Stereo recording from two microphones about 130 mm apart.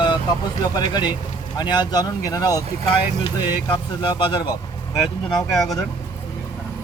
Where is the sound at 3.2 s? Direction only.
40° left (ahead or behind).